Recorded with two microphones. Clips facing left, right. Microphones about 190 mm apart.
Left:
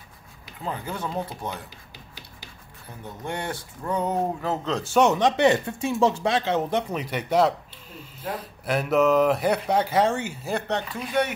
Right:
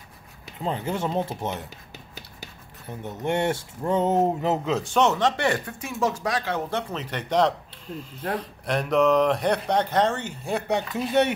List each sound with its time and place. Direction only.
0.6 s speech: 25° right (ahead or behind)
3.0 s speech: 25° right (ahead or behind)
4.8 s speech: 10° left (ahead or behind)
10.7 s speech: 25° right (ahead or behind)